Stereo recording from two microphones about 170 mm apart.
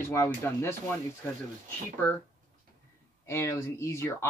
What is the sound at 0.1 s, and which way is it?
Speech, 15° left (ahead or behind).